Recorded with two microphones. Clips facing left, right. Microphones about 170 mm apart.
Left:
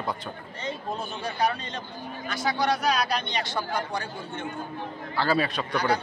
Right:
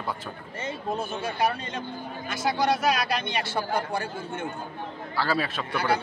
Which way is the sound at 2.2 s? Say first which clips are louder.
Right 1 dB; 5° right (ahead or behind).